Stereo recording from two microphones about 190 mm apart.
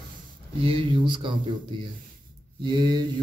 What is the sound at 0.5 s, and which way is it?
Speech, 30° right (ahead or behind).